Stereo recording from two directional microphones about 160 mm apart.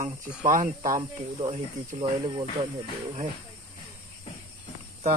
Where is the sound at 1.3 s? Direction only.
45° right (ahead or behind).